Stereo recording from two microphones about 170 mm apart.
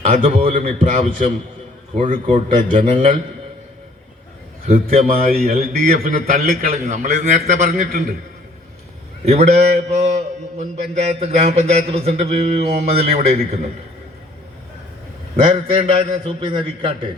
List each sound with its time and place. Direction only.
0.0 s a man's voice: 40° right (ahead or behind)
0.8 s a man's voice: 50° right (ahead or behind)
4.7 s a man's voice: 55° right (ahead or behind)
6.3 s a man's voice: 45° right (ahead or behind)
9.2 s a man's voice: 40° right (ahead or behind)
15.4 s a man's voice: 30° right (ahead or behind)